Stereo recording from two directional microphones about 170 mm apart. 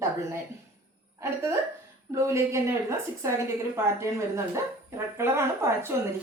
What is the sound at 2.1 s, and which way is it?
Speech, 15° right (ahead or behind).